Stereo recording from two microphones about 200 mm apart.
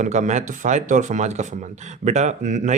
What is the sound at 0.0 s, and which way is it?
Speech, 35° right (ahead or behind).